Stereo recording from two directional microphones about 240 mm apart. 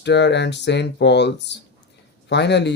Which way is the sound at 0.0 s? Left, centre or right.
Left.